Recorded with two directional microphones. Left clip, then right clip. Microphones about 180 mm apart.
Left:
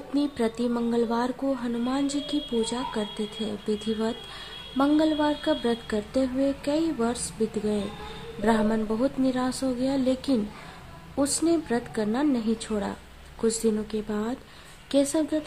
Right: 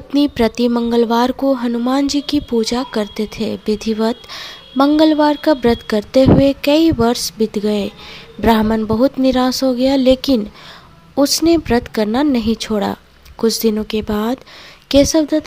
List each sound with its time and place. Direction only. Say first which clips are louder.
0.1 s a woman's voice: right 12 dB; 40° right (ahead or behind)